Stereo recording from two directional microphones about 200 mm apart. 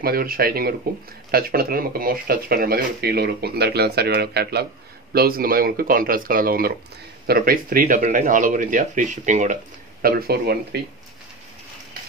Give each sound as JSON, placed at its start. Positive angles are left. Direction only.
{"t": 0.0, "sound": "speech", "side_deg": -50}
{"t": 10.0, "sound": "speech", "side_deg": -50}